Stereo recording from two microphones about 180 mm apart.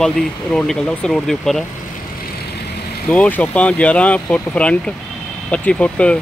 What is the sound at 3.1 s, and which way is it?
Speech, 10° left (ahead or behind).